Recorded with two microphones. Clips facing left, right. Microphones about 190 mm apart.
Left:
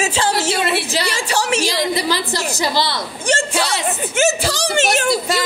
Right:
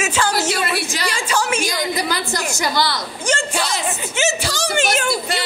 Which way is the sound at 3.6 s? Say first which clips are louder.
Left 2 dB; 50° left (ahead or behind).